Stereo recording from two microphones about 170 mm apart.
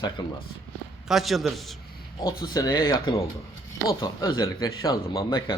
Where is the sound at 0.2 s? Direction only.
25° left (ahead or behind).